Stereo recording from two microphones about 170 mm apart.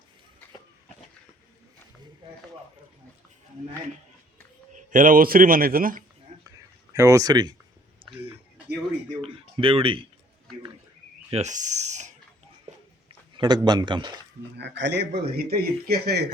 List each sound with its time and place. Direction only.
4.7 s a man's voice: 50° right (ahead or behind)
6.9 s speech: 20° right (ahead or behind)
9.2 s speech: 35° right (ahead or behind)
11.3 s speech: 40° right (ahead or behind)
13.3 s speech: 25° right (ahead or behind)
14.6 s speech: 90° right; by 16.2 s 65° right (ahead or behind)